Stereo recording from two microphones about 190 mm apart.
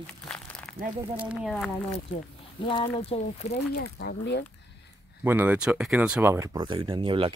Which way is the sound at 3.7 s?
60° left (ahead or behind).